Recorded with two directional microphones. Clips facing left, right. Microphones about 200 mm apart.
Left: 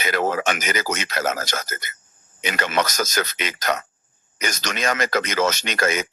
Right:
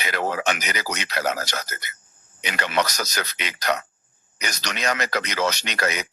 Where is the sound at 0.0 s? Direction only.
45° left (ahead or behind).